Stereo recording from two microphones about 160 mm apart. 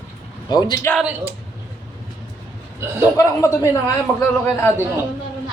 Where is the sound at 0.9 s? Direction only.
10° right (ahead or behind).